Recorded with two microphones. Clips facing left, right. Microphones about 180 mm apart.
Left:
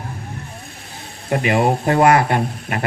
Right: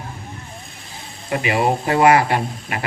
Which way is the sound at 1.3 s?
50° left (ahead or behind).